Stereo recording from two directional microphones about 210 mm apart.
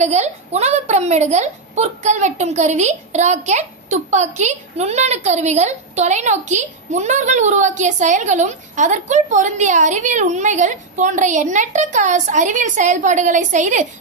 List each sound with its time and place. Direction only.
0.0 s a woman's voice: 30° right (ahead or behind)